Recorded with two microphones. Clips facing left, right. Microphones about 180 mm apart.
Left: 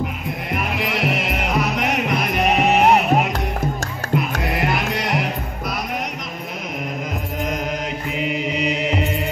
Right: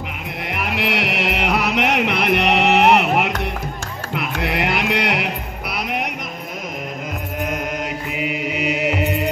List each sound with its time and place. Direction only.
0.5 s music: 70° right (ahead or behind)
4.4 s music: 70° right (ahead or behind)
8.2 s mantra: 5° right (ahead or behind)